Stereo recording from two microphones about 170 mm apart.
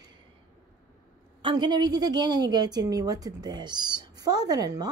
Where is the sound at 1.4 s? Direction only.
30° right (ahead or behind).